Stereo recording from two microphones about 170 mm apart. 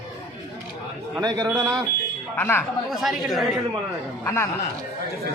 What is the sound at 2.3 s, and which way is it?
Speech, 10° left (ahead or behind).